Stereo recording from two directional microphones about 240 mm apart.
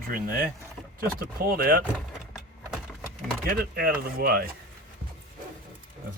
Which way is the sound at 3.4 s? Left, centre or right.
Right.